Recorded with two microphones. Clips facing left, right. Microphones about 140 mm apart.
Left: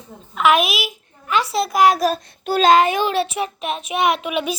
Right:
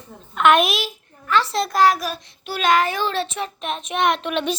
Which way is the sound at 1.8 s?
30° left (ahead or behind).